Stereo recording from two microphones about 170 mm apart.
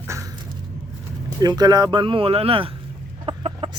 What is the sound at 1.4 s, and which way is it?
Speech, 25° right (ahead or behind).